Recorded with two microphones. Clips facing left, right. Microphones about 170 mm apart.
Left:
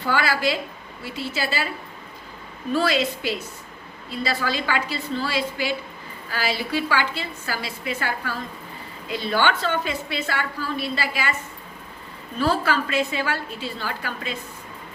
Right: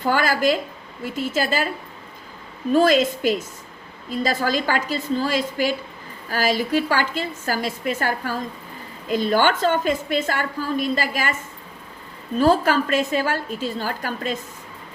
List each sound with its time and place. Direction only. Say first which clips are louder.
0.0 s a woman's voice: right 3 dB; 45° right (ahead or behind)
2.7 s a woman's voice: right 6 dB; 45° right (ahead or behind)
12.4 s a woman's voice: right 5 dB; 45° right (ahead or behind)